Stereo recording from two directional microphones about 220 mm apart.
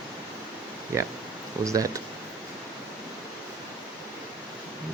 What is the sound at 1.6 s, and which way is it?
Speech, 15° right (ahead or behind).